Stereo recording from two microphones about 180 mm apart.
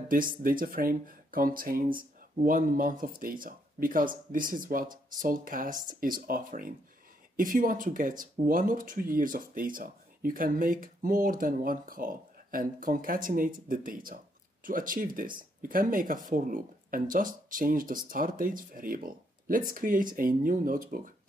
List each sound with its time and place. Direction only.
0.1 s speech: 50° right (ahead or behind)